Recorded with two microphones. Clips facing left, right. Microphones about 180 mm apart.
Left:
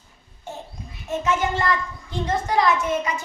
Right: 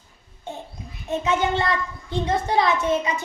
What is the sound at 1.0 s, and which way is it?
A child's voice, 20° right (ahead or behind).